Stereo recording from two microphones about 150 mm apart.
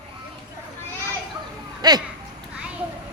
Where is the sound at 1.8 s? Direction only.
25° right (ahead or behind).